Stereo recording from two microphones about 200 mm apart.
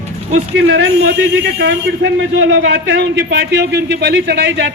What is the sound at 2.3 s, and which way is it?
A man's voice, 80° right.